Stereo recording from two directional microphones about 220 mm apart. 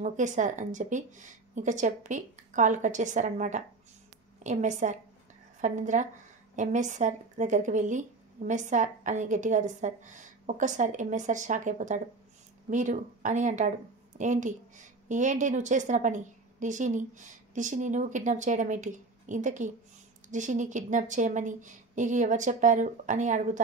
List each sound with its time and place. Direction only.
0.0 s speech: 35° right (ahead or behind)